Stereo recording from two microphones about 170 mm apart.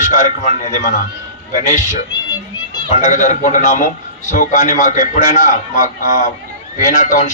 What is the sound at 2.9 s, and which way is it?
A man's voice, 50° left (ahead or behind).